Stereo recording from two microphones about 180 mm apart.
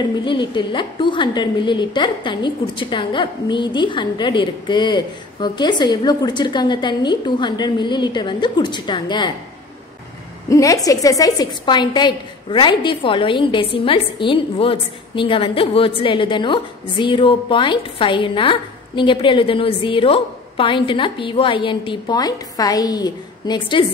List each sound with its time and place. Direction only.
0.2 s a woman's voice: 25° left (ahead or behind)
10.5 s a woman's voice: 20° left (ahead or behind)